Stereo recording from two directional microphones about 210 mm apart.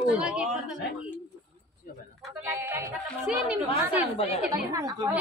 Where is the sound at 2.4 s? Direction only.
10° right (ahead or behind).